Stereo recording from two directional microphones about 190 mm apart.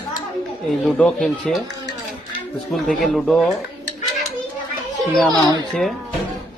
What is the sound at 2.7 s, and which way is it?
Speech, centre (ahead or behind).